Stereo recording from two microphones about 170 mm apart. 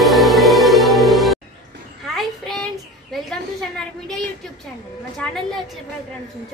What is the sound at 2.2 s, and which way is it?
Child singing, centre (ahead or behind).